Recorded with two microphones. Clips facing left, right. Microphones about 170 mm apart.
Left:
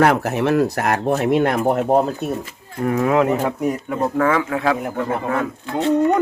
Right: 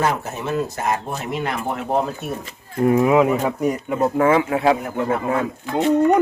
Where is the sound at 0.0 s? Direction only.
70° left (ahead or behind); by 2.0 s 45° left (ahead or behind).